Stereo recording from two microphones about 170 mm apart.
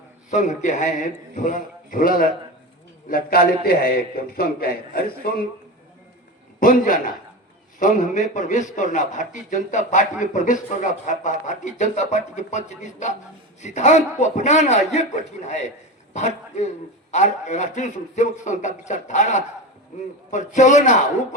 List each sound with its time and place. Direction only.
0.3 s a man's voice: 45° left (ahead or behind)
6.6 s a man's voice: 55° left (ahead or behind)